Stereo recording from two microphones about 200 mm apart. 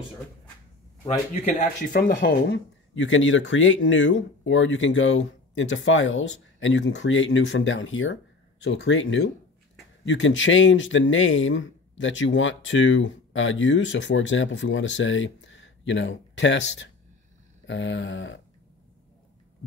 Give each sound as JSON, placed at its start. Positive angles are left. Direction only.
{"t": 1.4, "sound": "speech", "side_deg": 35}
{"t": 2.1, "sound": "speech", "side_deg": 65}